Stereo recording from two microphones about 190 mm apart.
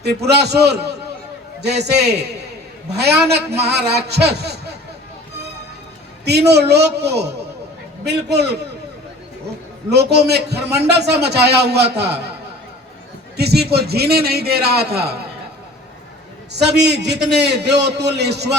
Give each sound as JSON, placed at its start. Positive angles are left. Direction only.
{"t": 0.0, "sound": "a man's voice", "side_deg": -60}
{"t": 6.2, "sound": "a man's voice", "side_deg": -60}
{"t": 9.9, "sound": "a man's voice", "side_deg": -60}
{"t": 13.3, "sound": "a man's voice", "side_deg": -60}
{"t": 16.5, "sound": "a man's voice", "side_deg": -60}